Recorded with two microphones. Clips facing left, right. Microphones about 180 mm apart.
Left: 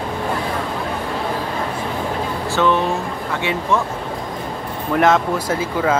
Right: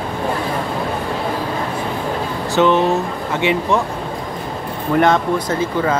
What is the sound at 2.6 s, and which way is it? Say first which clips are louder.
Speech: right 4 dB; 20° right (ahead or behind).